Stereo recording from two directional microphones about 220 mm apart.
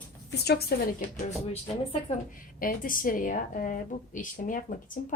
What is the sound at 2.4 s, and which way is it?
A woman's voice, 40° left (ahead or behind).